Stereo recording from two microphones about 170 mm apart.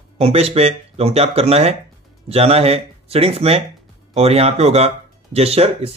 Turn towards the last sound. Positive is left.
turn(degrees=-35)  # may be behind; listen again after turning